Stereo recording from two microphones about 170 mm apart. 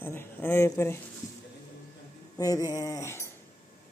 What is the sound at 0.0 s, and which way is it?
Speech, 15° left (ahead or behind).